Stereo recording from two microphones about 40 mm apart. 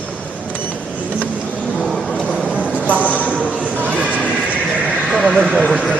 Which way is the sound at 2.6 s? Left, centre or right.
Right.